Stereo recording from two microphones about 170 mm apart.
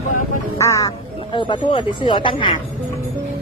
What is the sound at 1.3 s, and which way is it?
Speech, 30° left (ahead or behind).